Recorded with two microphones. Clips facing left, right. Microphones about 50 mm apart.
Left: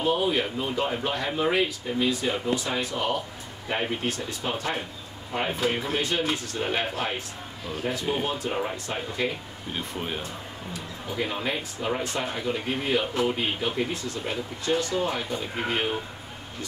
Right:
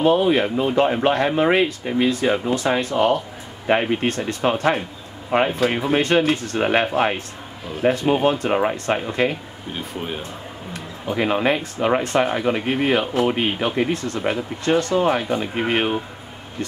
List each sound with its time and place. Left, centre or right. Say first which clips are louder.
0.0 s speech: right 8 dB; right
9.8 s speech: right 3 dB; centre
10.7 s speech: right 8 dB; right